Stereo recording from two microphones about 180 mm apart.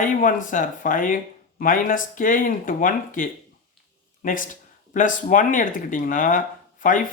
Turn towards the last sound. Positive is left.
turn(degrees=45)  # may be behind; listen again after turning